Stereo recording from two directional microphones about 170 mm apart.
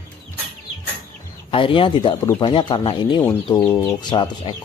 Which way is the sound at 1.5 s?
30° left (ahead or behind).